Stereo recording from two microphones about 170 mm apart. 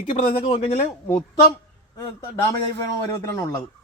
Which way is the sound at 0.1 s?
40° left (ahead or behind).